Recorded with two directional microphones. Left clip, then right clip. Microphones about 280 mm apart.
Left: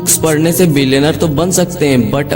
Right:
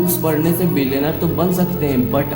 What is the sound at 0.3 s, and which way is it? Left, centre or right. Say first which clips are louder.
A man's voice: left 9 dB; left.